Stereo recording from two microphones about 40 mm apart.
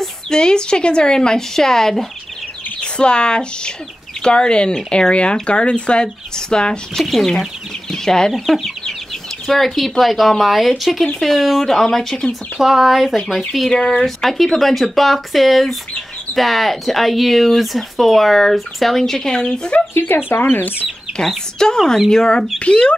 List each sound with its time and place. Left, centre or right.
0.0 s speech: centre
2.8 s speech: left
7.0 s speech: centre
8.3 s speech: centre
11.6 s speech: centre
12.5 s speech: centre
13.7 s speech: centre
14.0 s speech: centre; by 19.8 s left
19.9 s speech: left
21.2 s speech: centre
22.6 s speech: left